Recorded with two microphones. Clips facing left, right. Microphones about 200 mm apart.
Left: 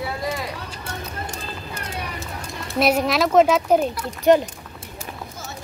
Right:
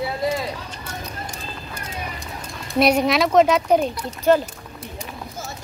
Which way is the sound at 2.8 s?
Centre (ahead or behind).